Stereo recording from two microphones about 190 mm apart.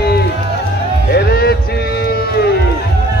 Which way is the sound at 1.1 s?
55° left (ahead or behind).